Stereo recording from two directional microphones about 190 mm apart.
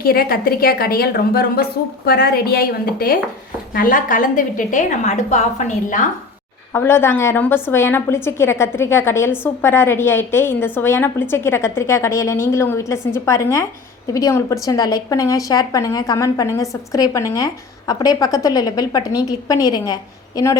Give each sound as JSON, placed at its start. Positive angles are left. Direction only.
{"t": 0.0, "sound": "a woman's voice", "side_deg": 50}
{"t": 6.7, "sound": "a woman's voice", "side_deg": 10}